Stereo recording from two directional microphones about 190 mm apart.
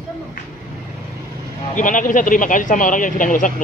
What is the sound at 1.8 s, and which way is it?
Speech, 45° left (ahead or behind).